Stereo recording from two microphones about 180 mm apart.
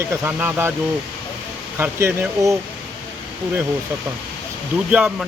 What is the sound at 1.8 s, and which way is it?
Speech, 10° right (ahead or behind).